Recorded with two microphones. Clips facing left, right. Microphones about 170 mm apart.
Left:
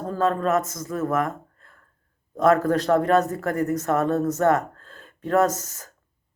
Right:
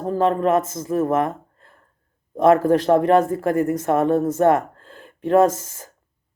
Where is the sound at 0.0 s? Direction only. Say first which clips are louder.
Right 4 dB; 25° right (ahead or behind).